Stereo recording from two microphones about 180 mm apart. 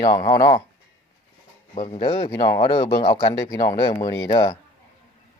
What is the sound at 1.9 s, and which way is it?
Speech, 25° left (ahead or behind).